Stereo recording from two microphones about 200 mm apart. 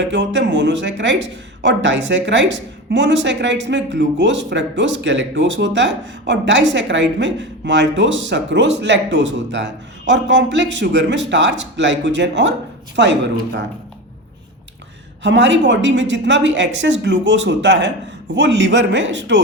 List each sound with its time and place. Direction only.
0.0 s speech: 65° right (ahead or behind)
15.2 s speech: 65° right (ahead or behind)